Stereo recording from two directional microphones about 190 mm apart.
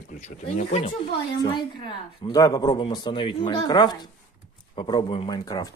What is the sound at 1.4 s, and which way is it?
A woman's voice, 25° left (ahead or behind).